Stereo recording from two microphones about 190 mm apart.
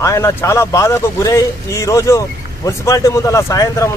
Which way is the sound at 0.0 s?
15° left (ahead or behind).